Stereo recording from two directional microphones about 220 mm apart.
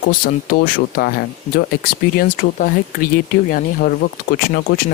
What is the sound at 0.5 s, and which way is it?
Speech, 45° left (ahead or behind).